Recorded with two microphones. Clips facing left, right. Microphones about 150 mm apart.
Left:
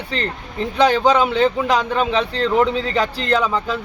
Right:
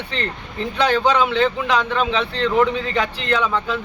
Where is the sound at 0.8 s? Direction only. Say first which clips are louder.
Left 3 dB; 10° left (ahead or behind).